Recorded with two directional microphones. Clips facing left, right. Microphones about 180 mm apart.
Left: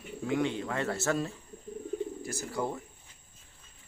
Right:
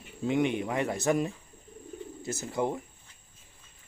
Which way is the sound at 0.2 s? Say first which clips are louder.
Right 3 dB; 20° right (ahead or behind).